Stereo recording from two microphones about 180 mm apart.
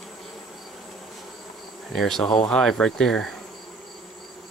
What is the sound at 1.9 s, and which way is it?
Speech, centre (ahead or behind).